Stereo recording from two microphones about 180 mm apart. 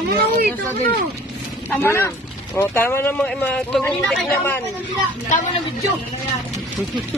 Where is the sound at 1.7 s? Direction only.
10° left (ahead or behind).